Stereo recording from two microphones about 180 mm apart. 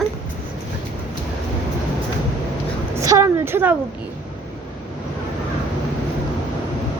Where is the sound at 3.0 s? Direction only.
15° right (ahead or behind).